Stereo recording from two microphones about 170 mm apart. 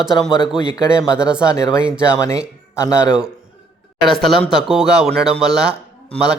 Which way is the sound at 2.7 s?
20° left (ahead or behind).